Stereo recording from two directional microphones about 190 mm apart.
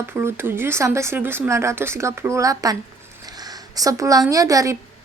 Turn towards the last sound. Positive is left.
turn(degrees=-15)  # may be behind; listen again after turning